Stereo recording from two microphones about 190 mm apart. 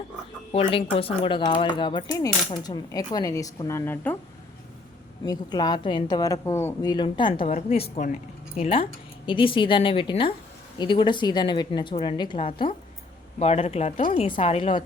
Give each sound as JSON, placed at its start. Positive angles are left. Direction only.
{"t": 0.5, "sound": "speech", "side_deg": 30}
{"t": 5.2, "sound": "speech", "side_deg": 20}
{"t": 7.3, "sound": "speech", "side_deg": 40}